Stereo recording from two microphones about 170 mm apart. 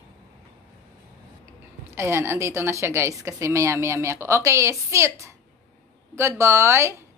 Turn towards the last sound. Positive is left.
turn(degrees=-15)  # may be behind; listen again after turning